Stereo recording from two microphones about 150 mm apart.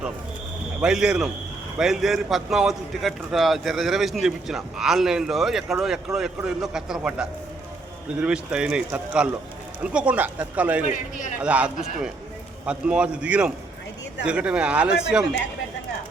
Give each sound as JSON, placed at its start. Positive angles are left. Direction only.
{"t": 0.8, "sound": "a man's voice", "side_deg": -5}
{"t": 10.8, "sound": "speech", "side_deg": 55}
{"t": 11.3, "sound": "speech", "side_deg": -10}